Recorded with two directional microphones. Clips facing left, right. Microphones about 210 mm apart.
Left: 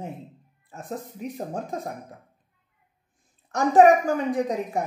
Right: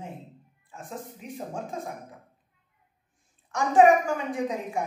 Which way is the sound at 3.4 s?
40° left (ahead or behind).